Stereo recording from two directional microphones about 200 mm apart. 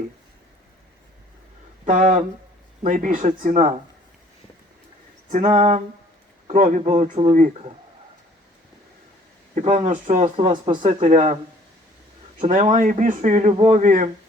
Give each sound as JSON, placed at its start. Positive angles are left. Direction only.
{"t": 1.8, "sound": "speech", "side_deg": -40}
{"t": 5.3, "sound": "speech", "side_deg": -35}
{"t": 9.6, "sound": "speech", "side_deg": -35}
{"t": 10.3, "sound": "speech", "side_deg": -25}
{"t": 12.4, "sound": "speech", "side_deg": -30}